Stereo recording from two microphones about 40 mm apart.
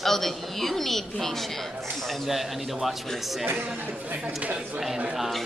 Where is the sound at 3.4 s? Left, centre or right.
Right.